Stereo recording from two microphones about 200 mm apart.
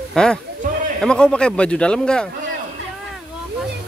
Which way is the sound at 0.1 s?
5° left (ahead or behind).